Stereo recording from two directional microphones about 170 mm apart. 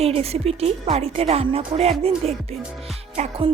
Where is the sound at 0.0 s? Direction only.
35° right (ahead or behind).